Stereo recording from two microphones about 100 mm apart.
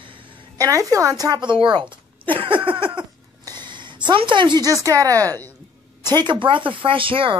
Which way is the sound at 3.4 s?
50° right (ahead or behind).